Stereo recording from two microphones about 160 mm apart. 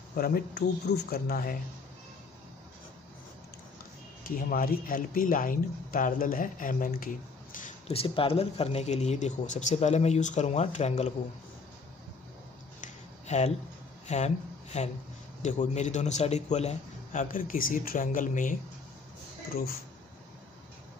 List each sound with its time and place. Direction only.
0.1 s speech: 70° left (ahead or behind)
4.2 s speech: 60° left (ahead or behind)
7.9 s speech: 35° left (ahead or behind)
12.8 s a sound: 45° left (ahead or behind)
14.0 s speech: 45° left (ahead or behind)